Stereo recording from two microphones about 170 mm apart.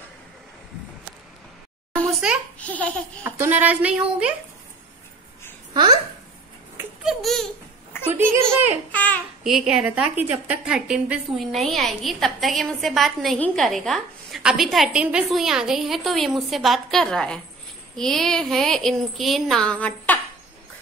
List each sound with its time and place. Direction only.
2.6 s speech: 10° left (ahead or behind)
3.3 s a woman's voice: 10° right (ahead or behind)
5.7 s speech: 25° right (ahead or behind)
7.1 s a woman's voice: centre (ahead or behind)
8.1 s a woman's voice: 10° right (ahead or behind)
8.9 s speech: 10° left (ahead or behind)
9.4 s a woman's voice: centre (ahead or behind)